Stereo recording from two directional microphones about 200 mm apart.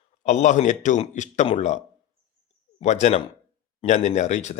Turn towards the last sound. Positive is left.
turn(degrees=35)  # may be behind; listen again after turning